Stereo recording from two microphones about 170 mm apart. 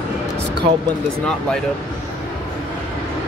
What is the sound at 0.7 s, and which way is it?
Speech, 35° right (ahead or behind).